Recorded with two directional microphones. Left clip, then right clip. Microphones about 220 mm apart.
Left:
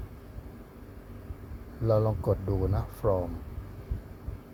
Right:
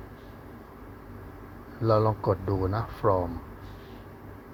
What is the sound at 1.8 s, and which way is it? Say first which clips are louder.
Speech: right 3 dB; 5° right (ahead or behind).